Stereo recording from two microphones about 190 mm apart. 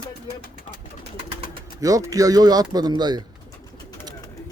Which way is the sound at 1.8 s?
20° right (ahead or behind).